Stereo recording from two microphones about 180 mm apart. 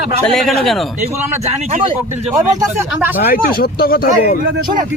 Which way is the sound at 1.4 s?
40° right (ahead or behind).